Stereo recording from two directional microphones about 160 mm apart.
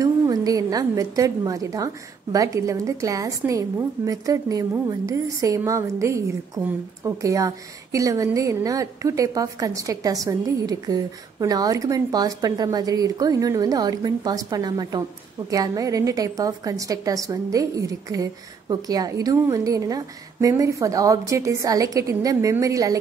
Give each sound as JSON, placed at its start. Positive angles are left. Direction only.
{"t": 0.0, "sound": "a woman's voice", "side_deg": -25}